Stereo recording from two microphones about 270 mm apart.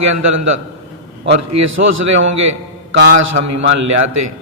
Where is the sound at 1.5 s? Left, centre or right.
Right.